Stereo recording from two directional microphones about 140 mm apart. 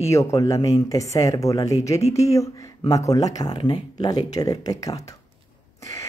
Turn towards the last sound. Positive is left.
turn(degrees=25)  # may be behind; listen again after turning